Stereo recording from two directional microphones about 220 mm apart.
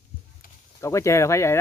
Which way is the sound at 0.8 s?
15° left (ahead or behind).